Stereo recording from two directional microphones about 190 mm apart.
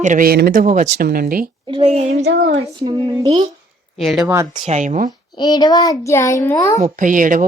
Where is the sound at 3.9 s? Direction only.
Centre (ahead or behind).